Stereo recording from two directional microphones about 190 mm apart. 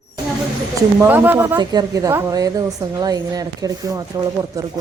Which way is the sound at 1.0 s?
10° right (ahead or behind).